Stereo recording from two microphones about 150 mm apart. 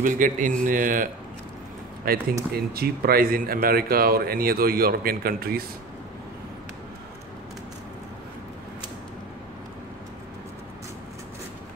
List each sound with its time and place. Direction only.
0.0 s mantra: 65° right (ahead or behind)
2.1 s speech: 75° right (ahead or behind)
2.5 s speech: 90° right